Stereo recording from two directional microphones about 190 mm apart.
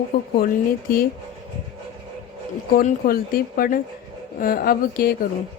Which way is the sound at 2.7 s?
50° left (ahead or behind).